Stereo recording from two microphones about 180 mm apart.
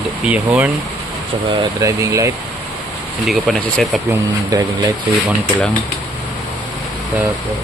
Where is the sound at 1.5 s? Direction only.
20° right (ahead or behind).